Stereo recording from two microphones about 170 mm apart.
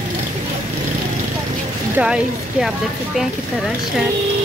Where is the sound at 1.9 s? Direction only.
5° right (ahead or behind).